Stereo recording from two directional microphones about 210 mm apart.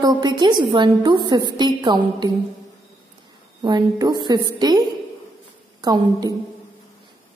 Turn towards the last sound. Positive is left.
turn(degrees=-20)  # may be behind; listen again after turning